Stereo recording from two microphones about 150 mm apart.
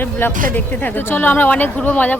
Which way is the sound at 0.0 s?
15° left (ahead or behind).